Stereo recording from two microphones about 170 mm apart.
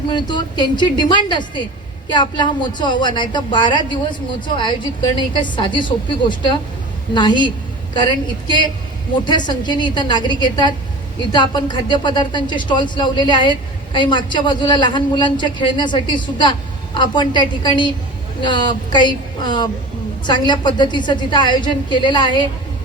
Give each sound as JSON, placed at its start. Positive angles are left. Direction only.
{"t": 0.1, "sound": "speech", "side_deg": 25}